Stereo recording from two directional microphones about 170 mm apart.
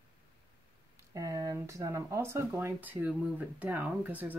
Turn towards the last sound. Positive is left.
turn(degrees=-10)  # may be behind; listen again after turning